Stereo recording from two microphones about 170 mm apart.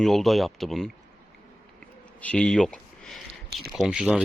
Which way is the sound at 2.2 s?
5° left (ahead or behind).